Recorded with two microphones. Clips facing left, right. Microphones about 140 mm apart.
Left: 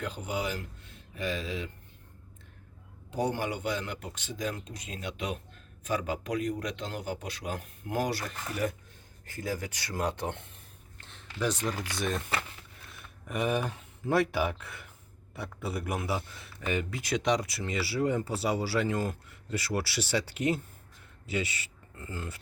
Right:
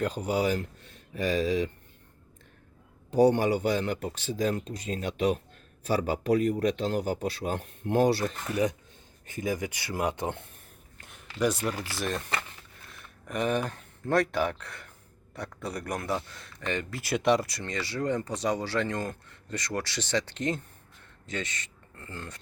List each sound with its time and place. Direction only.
0.0 s speech: 40° right (ahead or behind)
3.1 s speech: 35° right (ahead or behind)
9.2 s speech: 20° right (ahead or behind)
11.0 s a sound: 10° right (ahead or behind)
11.9 s a man's voice: centre (ahead or behind)
17.0 s speech: 5° right (ahead or behind)